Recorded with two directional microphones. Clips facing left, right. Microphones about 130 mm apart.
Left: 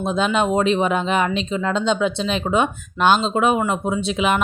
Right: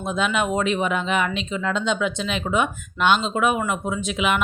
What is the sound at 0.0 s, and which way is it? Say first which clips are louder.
A woman's voice: left 4 dB; 30° left (ahead or behind).